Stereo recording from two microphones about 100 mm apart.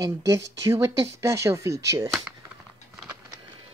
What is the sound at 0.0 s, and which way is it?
Speech, 35° right (ahead or behind).